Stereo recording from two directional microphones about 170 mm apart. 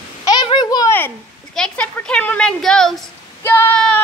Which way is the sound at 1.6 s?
5° left (ahead or behind).